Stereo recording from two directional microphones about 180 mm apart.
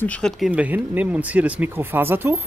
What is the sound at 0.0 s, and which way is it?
Speech, 5° left (ahead or behind).